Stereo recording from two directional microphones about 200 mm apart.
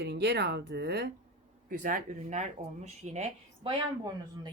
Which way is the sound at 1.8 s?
40° right (ahead or behind).